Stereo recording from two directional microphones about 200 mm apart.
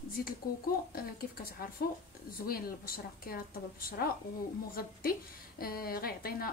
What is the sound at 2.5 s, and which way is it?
A woman's voice, 50° left (ahead or behind).